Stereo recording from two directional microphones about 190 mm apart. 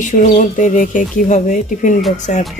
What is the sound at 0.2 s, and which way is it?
Speech, 40° left (ahead or behind).